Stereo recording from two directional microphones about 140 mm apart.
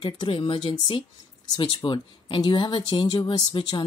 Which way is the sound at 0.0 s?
35° left (ahead or behind).